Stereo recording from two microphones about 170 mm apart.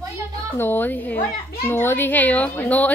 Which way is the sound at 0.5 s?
10° left (ahead or behind).